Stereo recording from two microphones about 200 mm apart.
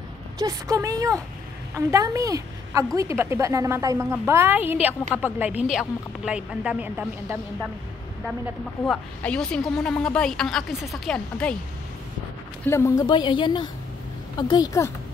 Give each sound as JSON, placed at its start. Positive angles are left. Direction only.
{"t": 0.4, "sound": "a woman's voice", "side_deg": -15}
{"t": 8.8, "sound": "speech", "side_deg": 5}
{"t": 12.6, "sound": "a woman's voice", "side_deg": 15}